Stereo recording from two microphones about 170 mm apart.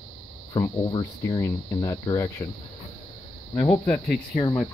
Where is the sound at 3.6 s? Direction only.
10° left (ahead or behind).